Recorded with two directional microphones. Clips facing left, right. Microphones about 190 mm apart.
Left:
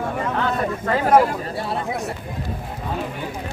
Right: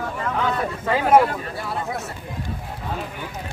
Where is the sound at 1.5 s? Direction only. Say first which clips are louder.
Left 3 dB; 25° left (ahead or behind).